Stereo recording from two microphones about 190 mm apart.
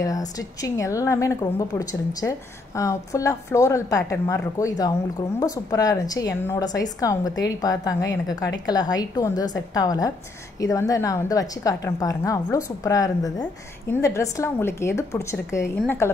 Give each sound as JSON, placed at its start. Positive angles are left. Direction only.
{"t": 0.0, "sound": "a woman's voice", "side_deg": 20}